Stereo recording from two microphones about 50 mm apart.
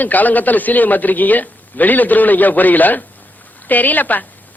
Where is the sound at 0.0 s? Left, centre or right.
Left.